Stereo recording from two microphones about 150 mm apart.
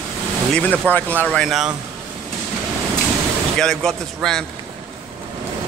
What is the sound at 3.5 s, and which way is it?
Speech, 5° left (ahead or behind).